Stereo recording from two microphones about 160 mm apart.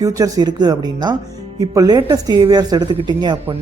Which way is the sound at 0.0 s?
20° right (ahead or behind).